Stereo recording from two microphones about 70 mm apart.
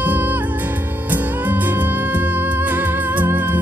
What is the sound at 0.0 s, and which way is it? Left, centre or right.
Music, right.